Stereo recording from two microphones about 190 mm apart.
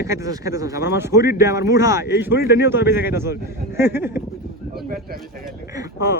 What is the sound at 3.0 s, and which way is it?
A man's voice, 10° right (ahead or behind).